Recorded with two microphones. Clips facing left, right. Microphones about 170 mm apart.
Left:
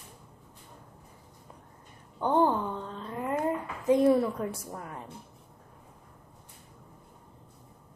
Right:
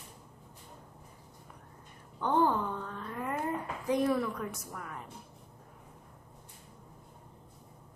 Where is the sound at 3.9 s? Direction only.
25° left (ahead or behind).